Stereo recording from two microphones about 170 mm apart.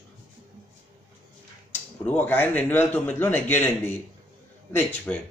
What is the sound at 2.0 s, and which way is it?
Speech, 10° left (ahead or behind).